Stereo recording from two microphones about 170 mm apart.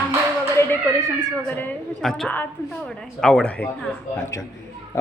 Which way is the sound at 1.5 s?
10° left (ahead or behind).